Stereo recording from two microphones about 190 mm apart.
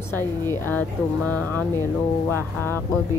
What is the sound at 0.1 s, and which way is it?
Speech, 10° left (ahead or behind).